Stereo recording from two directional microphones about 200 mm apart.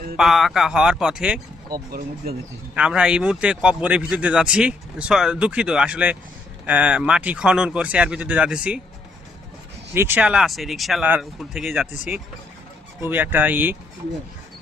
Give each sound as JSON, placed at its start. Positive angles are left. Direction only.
{"t": 0.2, "sound": "speech", "side_deg": 0}
{"t": 1.7, "sound": "speech", "side_deg": -50}
{"t": 2.7, "sound": "speech", "side_deg": -5}
{"t": 9.9, "sound": "speech", "side_deg": -10}